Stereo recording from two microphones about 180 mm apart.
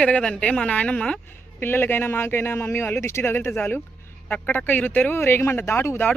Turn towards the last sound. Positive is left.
turn(degrees=10)  # may be behind; listen again after turning